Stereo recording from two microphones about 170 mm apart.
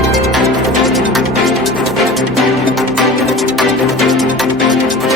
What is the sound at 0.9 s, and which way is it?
Music, centre (ahead or behind).